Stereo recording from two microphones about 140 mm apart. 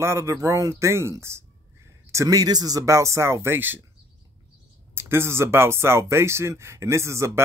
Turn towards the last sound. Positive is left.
turn(degrees=-20)  # may be behind; listen again after turning